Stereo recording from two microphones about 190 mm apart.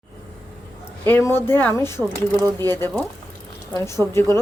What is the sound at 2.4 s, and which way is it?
Speech, 20° right (ahead or behind).